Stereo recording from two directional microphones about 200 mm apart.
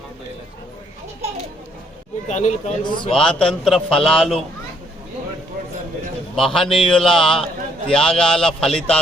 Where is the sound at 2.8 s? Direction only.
25° left (ahead or behind).